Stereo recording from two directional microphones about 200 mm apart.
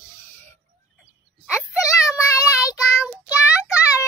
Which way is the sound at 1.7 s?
15° left (ahead or behind).